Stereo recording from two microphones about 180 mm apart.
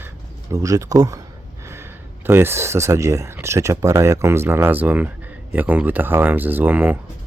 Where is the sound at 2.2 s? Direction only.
15° right (ahead or behind).